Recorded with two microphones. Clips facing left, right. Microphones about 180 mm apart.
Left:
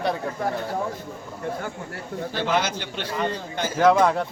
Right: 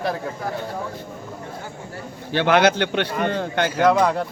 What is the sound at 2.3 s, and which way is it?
A man's voice, 70° right (ahead or behind).